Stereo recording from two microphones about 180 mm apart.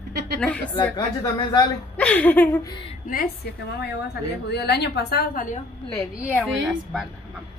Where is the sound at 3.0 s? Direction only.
55° left (ahead or behind).